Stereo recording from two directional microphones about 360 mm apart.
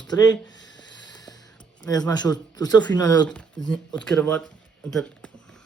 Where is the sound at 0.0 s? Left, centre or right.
Centre.